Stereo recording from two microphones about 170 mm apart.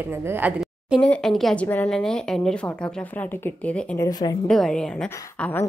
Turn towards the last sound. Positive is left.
turn(degrees=5)  # may be behind; listen again after turning